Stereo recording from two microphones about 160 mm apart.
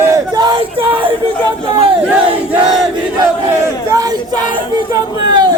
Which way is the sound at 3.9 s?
25° right (ahead or behind).